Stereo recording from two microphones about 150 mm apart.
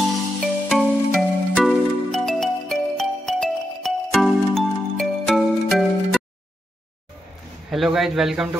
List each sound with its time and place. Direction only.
0.4 s music: centre (ahead or behind)
7.7 s a man's voice: centre (ahead or behind)